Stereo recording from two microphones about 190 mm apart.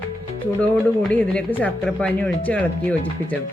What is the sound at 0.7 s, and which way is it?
Speech, 5° left (ahead or behind).